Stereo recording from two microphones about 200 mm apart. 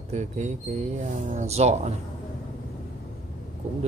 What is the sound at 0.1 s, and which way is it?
Speech, 35° right (ahead or behind).